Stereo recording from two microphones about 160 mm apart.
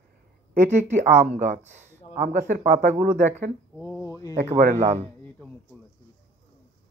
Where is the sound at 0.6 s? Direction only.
50° right (ahead or behind).